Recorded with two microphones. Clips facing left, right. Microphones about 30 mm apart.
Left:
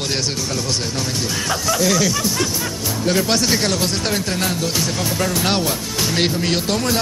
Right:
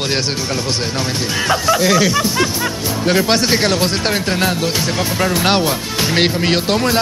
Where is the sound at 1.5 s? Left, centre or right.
Right.